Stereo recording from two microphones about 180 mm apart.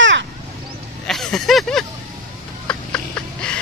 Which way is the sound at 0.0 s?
90° right.